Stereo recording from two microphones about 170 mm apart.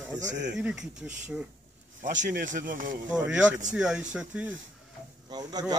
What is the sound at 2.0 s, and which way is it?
Speech, 50° right (ahead or behind).